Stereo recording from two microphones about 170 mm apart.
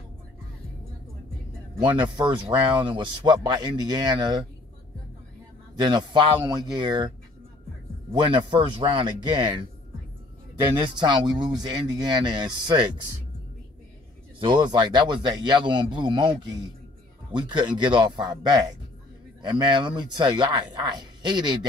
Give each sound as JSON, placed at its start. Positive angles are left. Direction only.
{"t": 1.8, "sound": "speech", "side_deg": -10}
{"t": 2.3, "sound": "a man's voice", "side_deg": -30}
{"t": 5.8, "sound": "a man's voice", "side_deg": -25}
{"t": 8.1, "sound": "a man's voice", "side_deg": -30}
{"t": 10.8, "sound": "a man's voice", "side_deg": -25}
{"t": 14.4, "sound": "a man's voice", "side_deg": -25}
{"t": 18.0, "sound": "a man's voice", "side_deg": -25}